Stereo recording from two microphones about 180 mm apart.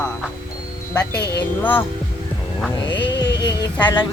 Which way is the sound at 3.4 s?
25° left (ahead or behind).